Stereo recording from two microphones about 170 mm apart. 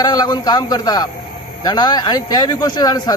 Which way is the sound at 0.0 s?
25° left (ahead or behind).